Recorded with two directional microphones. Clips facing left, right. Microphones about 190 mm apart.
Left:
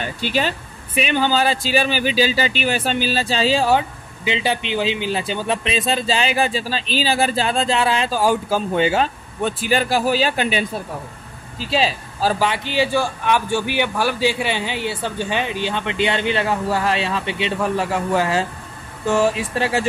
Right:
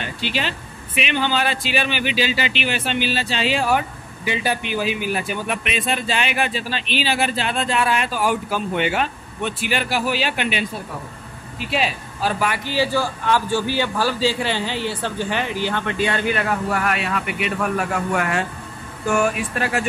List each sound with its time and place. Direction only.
0.0 s speech: 45° left (ahead or behind)
11.6 s speech: 30° left (ahead or behind)
12.4 s a man's voice: 20° left (ahead or behind)